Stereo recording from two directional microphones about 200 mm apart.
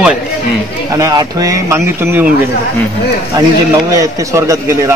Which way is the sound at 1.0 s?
20° right (ahead or behind).